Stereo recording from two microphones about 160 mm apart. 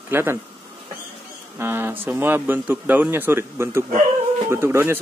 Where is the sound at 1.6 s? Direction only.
15° right (ahead or behind).